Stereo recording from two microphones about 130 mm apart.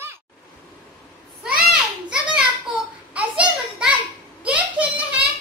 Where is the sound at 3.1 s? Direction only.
10° right (ahead or behind).